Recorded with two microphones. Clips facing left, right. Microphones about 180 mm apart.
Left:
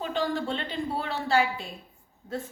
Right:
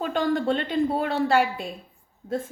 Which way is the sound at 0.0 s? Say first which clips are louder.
Right 5 dB; 50° right (ahead or behind).